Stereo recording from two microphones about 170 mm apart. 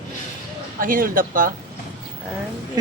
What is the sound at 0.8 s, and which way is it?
Speech, 55° right (ahead or behind).